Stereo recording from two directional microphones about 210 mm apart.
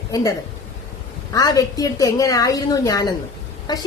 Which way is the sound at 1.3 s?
15° left (ahead or behind).